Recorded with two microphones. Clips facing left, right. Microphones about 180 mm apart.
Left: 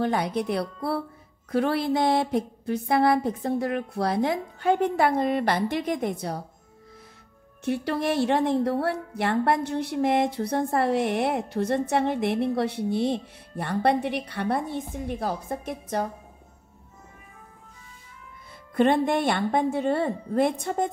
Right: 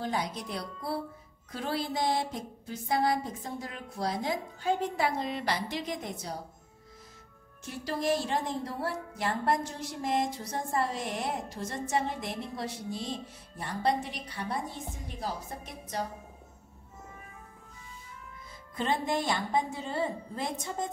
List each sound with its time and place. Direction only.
0.0 s a woman's voice: 60° left (ahead or behind)
7.6 s a woman's voice: 65° left (ahead or behind)
18.8 s a woman's voice: 65° left (ahead or behind)